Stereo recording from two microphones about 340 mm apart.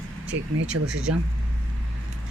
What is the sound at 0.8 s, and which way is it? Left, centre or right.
Speech, right.